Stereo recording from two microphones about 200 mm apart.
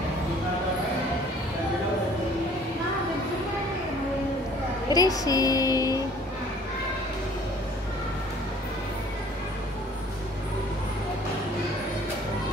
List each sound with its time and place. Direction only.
4.8 s a woman's voice: 20° left (ahead or behind)